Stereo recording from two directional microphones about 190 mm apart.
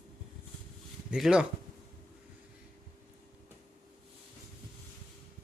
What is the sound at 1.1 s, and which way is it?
Speech, 5° right (ahead or behind).